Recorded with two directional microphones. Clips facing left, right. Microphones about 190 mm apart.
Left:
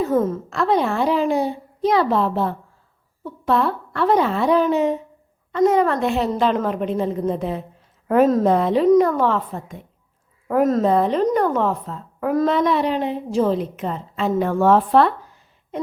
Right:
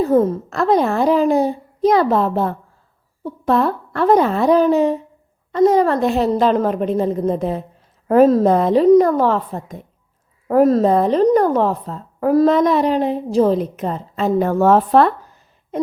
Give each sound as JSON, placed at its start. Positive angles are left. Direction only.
{"t": 0.0, "sound": "a woman's voice", "side_deg": -35}